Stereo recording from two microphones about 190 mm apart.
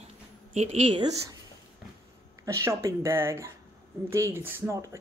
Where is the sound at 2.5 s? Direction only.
15° right (ahead or behind).